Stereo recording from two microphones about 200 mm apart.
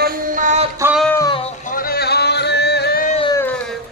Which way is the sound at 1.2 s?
20° left (ahead or behind).